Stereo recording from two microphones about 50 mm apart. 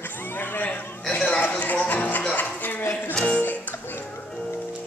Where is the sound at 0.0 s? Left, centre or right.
Left.